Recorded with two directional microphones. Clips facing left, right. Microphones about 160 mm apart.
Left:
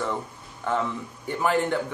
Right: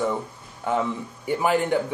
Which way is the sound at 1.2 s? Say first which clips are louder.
Right 2 dB; 10° right (ahead or behind).